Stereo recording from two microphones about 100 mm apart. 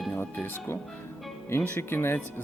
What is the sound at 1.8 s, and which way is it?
Speech, 25° left (ahead or behind).